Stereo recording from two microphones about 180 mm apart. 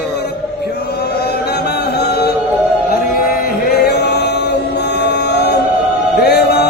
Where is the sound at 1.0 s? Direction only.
65° left (ahead or behind).